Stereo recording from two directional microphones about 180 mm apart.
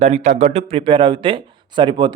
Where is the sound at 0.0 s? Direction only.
40° right (ahead or behind).